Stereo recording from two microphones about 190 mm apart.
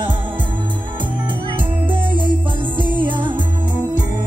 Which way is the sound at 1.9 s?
25° right (ahead or behind).